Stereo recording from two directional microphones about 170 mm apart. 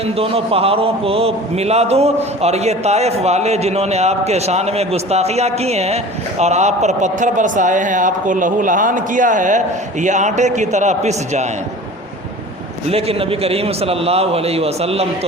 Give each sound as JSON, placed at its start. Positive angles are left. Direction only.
{"t": 0.2, "sound": "a man's voice", "side_deg": -35}
{"t": 12.9, "sound": "a man's voice", "side_deg": -35}